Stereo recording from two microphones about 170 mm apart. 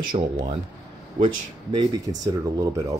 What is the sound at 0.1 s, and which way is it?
Speech, 35° right (ahead or behind).